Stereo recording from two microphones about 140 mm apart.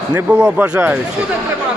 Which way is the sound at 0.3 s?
10° right (ahead or behind).